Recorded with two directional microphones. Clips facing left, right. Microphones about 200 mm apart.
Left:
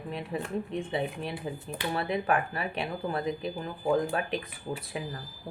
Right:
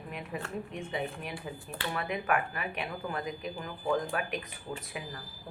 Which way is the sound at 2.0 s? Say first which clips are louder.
Left 3 dB; 30° left (ahead or behind).